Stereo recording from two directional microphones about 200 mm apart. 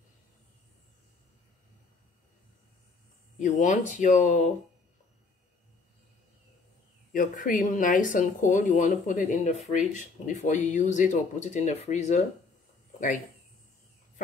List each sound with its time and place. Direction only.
3.3 s speech: 40° left (ahead or behind)
7.1 s speech: 45° left (ahead or behind)